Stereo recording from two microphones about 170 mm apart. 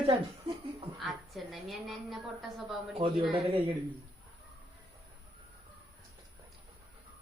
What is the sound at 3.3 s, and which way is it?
Speech, 30° right (ahead or behind).